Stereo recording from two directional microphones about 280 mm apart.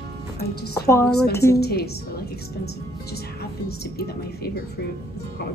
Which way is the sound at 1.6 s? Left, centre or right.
Left.